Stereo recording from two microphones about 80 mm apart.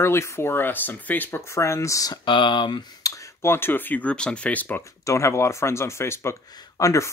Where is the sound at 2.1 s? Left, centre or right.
Left.